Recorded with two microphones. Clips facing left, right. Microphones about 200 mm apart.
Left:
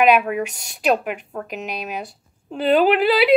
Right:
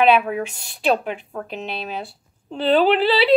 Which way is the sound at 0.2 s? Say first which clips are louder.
Left 1 dB; 5° left (ahead or behind).